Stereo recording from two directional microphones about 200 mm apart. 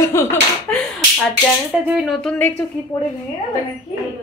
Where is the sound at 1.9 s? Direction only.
Centre (ahead or behind).